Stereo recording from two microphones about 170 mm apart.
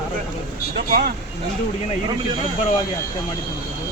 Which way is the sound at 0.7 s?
65° right (ahead or behind).